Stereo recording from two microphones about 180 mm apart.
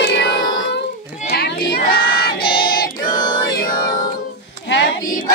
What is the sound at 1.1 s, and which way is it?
Child singing, 55° left (ahead or behind).